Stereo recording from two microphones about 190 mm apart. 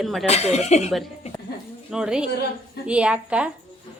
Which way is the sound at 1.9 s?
5° right (ahead or behind).